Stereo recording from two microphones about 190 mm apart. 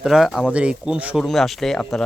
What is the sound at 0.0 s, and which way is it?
Speech, centre (ahead or behind).